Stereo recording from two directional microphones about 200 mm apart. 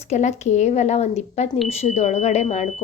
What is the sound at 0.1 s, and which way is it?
A woman's voice, 35° left (ahead or behind).